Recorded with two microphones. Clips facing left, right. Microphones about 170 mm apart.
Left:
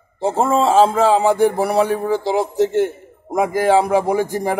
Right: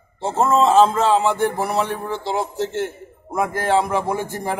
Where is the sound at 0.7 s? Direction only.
10° left (ahead or behind).